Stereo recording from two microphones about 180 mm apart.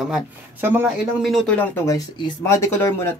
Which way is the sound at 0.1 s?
10° right (ahead or behind).